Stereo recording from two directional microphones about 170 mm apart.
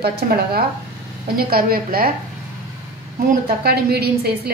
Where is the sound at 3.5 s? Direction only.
65° right (ahead or behind).